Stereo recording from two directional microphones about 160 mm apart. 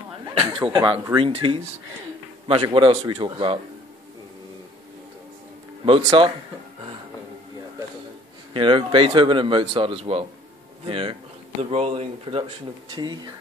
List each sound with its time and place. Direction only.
0.4 s speech: 30° right (ahead or behind)
5.9 s speech: 25° right (ahead or behind)
8.5 s speech: 30° right (ahead or behind)